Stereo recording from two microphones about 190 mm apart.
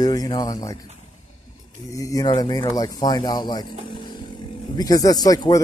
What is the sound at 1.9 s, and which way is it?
Speech, 15° left (ahead or behind).